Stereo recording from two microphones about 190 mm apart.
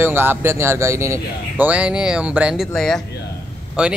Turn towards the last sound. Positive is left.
turn(degrees=-5)  # may be behind; listen again after turning